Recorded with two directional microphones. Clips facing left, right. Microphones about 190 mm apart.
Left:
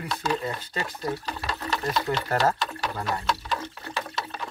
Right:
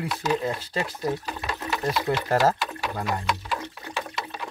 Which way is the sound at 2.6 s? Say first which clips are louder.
Right 1 dB; 15° right (ahead or behind).